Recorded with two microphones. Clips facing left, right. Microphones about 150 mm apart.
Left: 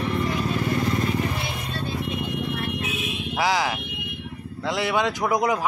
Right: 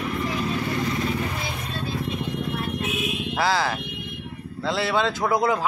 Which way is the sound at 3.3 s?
15° left (ahead or behind).